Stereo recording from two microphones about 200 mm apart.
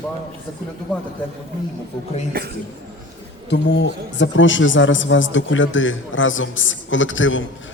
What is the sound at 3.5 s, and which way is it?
A man's voice, 65° left (ahead or behind).